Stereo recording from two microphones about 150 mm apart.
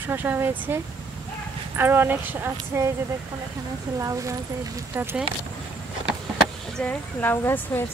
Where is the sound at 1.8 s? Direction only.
15° right (ahead or behind).